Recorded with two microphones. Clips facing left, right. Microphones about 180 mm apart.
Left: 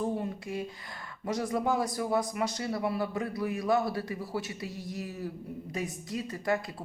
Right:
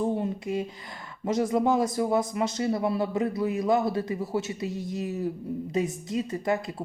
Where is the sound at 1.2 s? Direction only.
20° right (ahead or behind).